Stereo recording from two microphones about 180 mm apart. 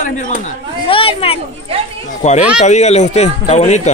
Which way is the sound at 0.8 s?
30° left (ahead or behind).